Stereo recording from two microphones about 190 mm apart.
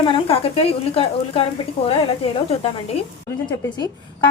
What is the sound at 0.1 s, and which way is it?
A woman's voice, 30° left (ahead or behind).